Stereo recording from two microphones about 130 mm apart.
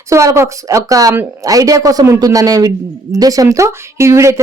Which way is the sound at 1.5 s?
25° right (ahead or behind).